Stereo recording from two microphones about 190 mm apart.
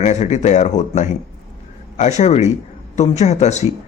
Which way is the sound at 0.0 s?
35° left (ahead or behind).